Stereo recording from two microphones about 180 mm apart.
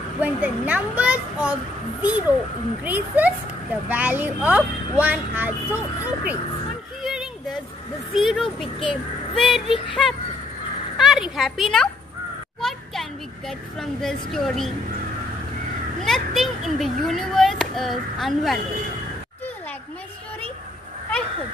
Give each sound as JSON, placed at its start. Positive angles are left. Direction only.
{"t": 0.2, "sound": "speech", "side_deg": -10}
{"t": 7.0, "sound": "music", "side_deg": 0}
{"t": 8.1, "sound": "a child's voice", "side_deg": 0}
{"t": 12.5, "sound": "a sound", "side_deg": 0}
{"t": 13.5, "sound": "a child's voice", "side_deg": 0}
{"t": 16.0, "sound": "a child's voice", "side_deg": 0}